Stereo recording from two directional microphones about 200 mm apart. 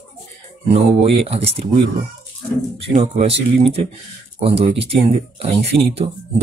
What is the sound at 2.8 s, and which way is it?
Speech, 30° right (ahead or behind).